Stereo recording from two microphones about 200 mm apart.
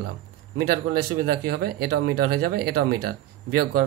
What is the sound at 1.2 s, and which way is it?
Speech, 50° right (ahead or behind).